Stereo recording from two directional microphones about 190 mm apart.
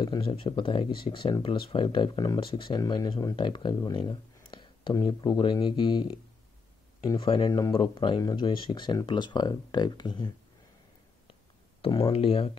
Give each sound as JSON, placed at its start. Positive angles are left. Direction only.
{"t": 0.0, "sound": "speech", "side_deg": 25}
{"t": 11.8, "sound": "speech", "side_deg": 30}